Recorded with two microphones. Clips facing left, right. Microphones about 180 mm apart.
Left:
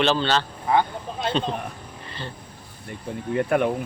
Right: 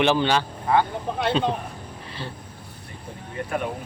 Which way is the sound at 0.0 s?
15° right (ahead or behind).